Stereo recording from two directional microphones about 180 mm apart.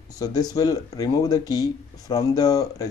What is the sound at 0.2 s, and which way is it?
Speech, 20° left (ahead or behind).